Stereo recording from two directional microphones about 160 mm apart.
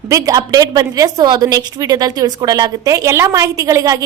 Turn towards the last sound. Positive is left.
turn(degrees=-20)  # may be behind; listen again after turning